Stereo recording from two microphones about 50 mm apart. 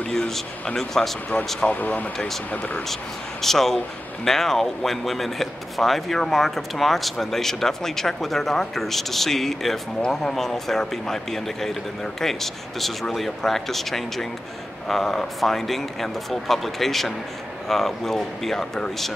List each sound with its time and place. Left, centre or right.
0.1 s speech: centre
1.6 s speech: left
2.9 s speech: centre